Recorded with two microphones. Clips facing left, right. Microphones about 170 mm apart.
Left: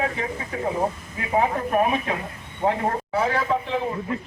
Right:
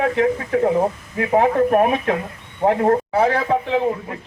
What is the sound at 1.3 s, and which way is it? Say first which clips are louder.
A man's voice: right 6 dB; 55° right (ahead or behind).